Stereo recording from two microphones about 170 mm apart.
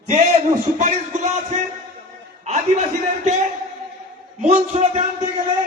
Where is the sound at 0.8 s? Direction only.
45° right (ahead or behind).